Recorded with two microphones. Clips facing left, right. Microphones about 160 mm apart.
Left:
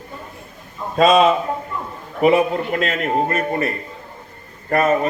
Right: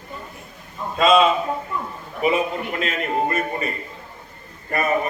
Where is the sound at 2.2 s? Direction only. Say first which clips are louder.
Left 6 dB; 65° left (ahead or behind).